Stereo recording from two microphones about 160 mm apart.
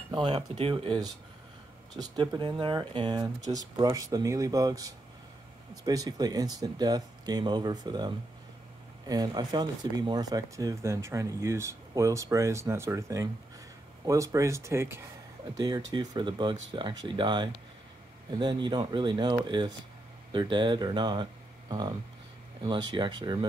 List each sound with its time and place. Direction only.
0.1 s speech: 30° right (ahead or behind)
9.1 s speech: 25° right (ahead or behind)